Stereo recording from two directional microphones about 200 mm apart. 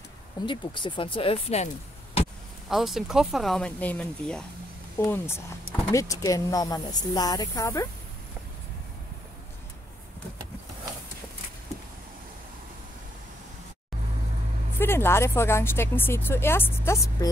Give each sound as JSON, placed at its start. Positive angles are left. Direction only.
{"t": 0.5, "sound": "speech", "side_deg": 25}
{"t": 2.7, "sound": "speech", "side_deg": 0}
{"t": 14.8, "sound": "speech", "side_deg": 10}